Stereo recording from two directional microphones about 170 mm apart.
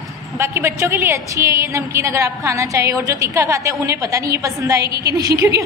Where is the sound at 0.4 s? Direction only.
15° right (ahead or behind).